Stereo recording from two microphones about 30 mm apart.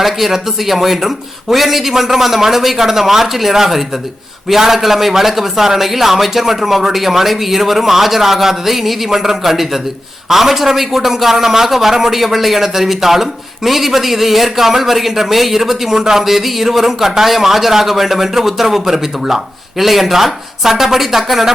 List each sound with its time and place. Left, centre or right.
0.0 s a man's voice: centre
16.0 s speech: centre
16.2 s a man's voice: centre